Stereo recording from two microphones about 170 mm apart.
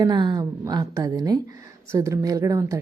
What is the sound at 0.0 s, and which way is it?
A woman's voice, 25° right (ahead or behind).